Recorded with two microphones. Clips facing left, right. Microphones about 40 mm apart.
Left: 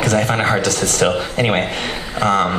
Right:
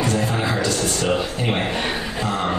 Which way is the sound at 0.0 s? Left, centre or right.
Left.